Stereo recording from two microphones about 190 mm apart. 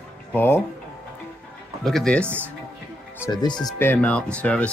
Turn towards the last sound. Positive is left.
turn(degrees=5)  # may be behind; listen again after turning